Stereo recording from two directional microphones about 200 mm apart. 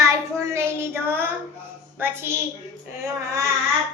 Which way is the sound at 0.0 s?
15° right (ahead or behind).